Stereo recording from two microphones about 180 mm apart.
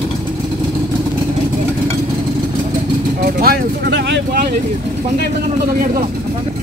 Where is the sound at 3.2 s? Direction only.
55° right (ahead or behind); by 4.2 s 75° right (ahead or behind).